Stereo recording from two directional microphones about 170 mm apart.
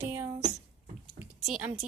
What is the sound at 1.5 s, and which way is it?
Speech, 5° right (ahead or behind).